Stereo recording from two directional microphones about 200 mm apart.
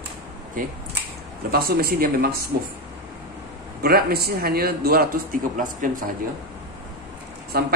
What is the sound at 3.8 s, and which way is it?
Speech, 50° right (ahead or behind).